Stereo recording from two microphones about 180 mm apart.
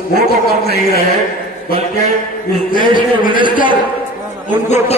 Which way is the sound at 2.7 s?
50° left (ahead or behind).